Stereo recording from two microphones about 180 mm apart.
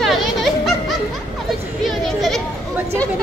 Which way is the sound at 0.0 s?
Centre (ahead or behind).